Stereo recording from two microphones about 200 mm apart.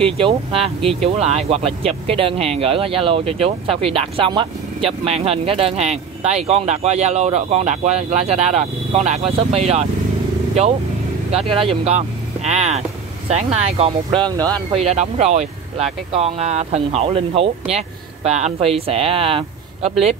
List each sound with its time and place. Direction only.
0.0 s speech: 25° right (ahead or behind)
11.3 s speech: 30° right (ahead or behind)
14.8 s speech: 35° right (ahead or behind)